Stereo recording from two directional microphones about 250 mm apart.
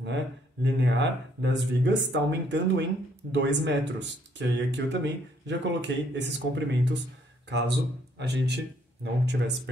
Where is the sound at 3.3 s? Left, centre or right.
Right.